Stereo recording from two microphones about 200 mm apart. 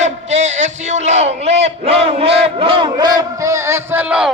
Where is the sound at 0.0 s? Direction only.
35° right (ahead or behind).